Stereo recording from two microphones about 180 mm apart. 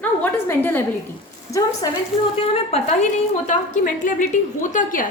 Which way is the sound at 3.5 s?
45° left (ahead or behind).